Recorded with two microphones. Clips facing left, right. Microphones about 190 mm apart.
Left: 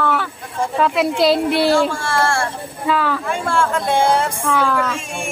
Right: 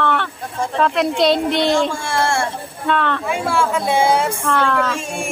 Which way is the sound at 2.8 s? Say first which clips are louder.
Even; 5° left (ahead or behind).